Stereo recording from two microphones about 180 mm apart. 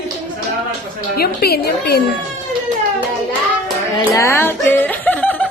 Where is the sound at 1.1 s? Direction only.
60° left (ahead or behind).